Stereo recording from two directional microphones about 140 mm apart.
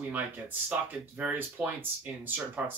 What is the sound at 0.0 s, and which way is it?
Speech, 10° right (ahead or behind).